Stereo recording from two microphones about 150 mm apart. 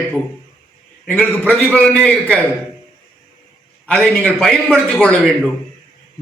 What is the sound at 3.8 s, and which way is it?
A man's voice, 5° left (ahead or behind).